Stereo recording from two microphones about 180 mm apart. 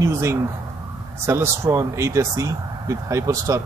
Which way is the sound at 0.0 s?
15° right (ahead or behind).